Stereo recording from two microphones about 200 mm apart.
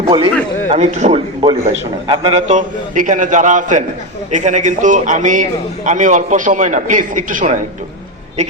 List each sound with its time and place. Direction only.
0.0 s a man's voice: 25° right (ahead or behind)
2.5 s a man's voice: 40° right (ahead or behind)